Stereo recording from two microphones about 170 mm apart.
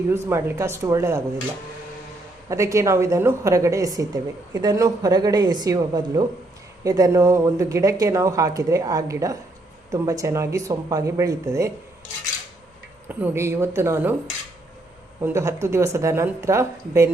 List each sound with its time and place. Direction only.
0.1 s speech: 15° right (ahead or behind)
2.5 s a woman's voice: 20° right (ahead or behind)
13.1 s speech: 10° right (ahead or behind)
15.2 s speech: 15° right (ahead or behind)